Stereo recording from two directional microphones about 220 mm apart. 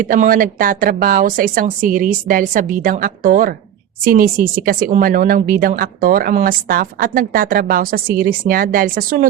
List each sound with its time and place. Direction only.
0.0 s speech: 40° right (ahead or behind)